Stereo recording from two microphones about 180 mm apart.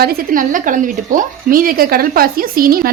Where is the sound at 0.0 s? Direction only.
55° right (ahead or behind).